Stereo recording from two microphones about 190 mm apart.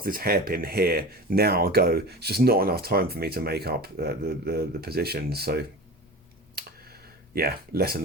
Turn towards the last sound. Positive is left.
turn(degrees=-55)  # may be behind; listen again after turning